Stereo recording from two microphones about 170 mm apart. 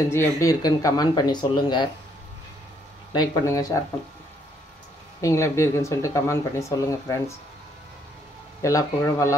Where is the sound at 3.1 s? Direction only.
20° left (ahead or behind).